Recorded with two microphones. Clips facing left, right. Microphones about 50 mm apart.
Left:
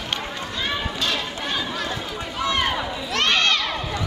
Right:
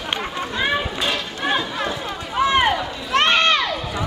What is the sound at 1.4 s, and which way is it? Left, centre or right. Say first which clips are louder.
Chatter: right 8 dB; right.